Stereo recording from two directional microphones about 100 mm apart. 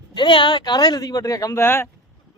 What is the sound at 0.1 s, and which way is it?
Speech, 55° left (ahead or behind).